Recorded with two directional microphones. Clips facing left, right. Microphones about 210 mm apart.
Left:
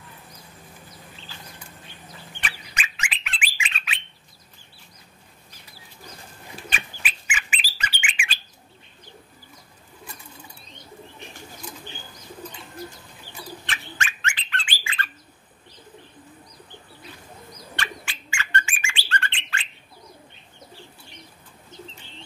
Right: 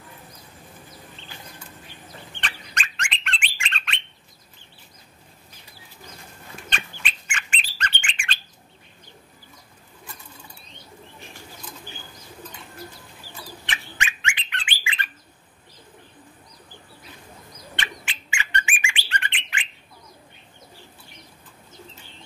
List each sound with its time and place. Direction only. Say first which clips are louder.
2.4 s bird: even; 5° left (ahead or behind)
6.7 s bird: right 3 dB; 5° left (ahead or behind)
13.9 s bird: even; 15° right (ahead or behind)
17.7 s bird: left 1 dB; 20° right (ahead or behind)